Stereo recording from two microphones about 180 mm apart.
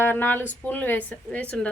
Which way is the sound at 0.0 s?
10° left (ahead or behind).